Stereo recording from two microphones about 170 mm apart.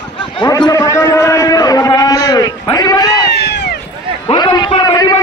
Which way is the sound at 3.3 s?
80° left.